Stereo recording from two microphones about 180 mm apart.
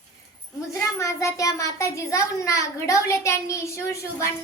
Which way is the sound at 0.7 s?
15° left (ahead or behind).